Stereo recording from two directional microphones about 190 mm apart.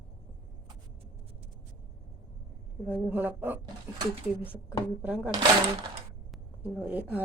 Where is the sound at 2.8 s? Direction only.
10° right (ahead or behind).